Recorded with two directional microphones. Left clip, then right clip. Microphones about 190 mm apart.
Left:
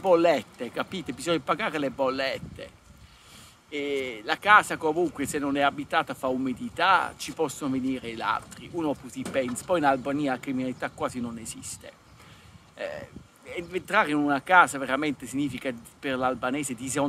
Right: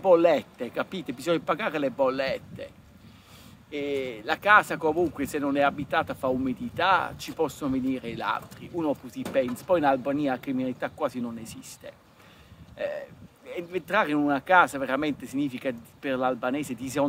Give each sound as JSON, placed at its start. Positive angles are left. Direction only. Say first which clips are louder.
{"t": 0.0, "sound": "speech", "louder": "right 1 dB", "side_deg": 10}
{"t": 3.7, "sound": "speech", "louder": "even", "side_deg": 5}